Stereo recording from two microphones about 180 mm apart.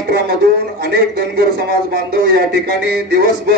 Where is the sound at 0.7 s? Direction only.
60° right (ahead or behind).